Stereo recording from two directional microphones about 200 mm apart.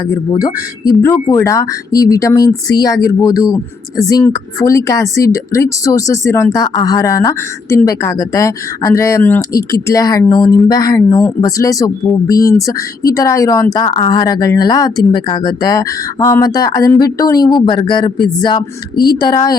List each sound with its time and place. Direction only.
0.1 s speech: 20° left (ahead or behind)